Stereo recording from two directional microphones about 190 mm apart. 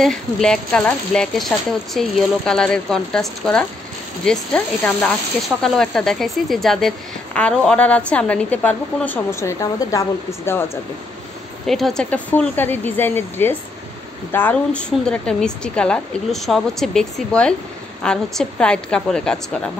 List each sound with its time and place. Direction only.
0.0 s a woman's voice: 5° left (ahead or behind)
11.6 s a woman's voice: centre (ahead or behind)